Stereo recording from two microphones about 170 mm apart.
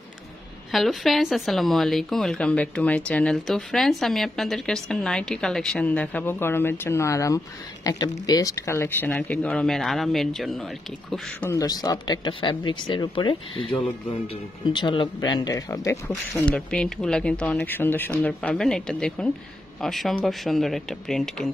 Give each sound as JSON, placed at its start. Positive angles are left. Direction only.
{"t": 0.7, "sound": "speech", "side_deg": 0}
{"t": 11.5, "sound": "speech", "side_deg": 20}